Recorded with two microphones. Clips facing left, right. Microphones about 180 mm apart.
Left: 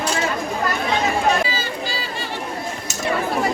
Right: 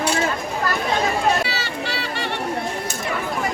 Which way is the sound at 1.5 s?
70° right (ahead or behind).